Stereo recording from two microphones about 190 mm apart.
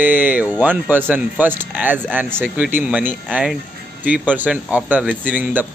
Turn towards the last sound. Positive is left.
turn(degrees=-10)  # may be behind; listen again after turning